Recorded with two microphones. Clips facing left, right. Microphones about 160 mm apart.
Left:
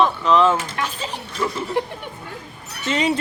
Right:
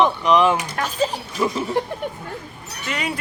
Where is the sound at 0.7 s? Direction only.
40° right (ahead or behind).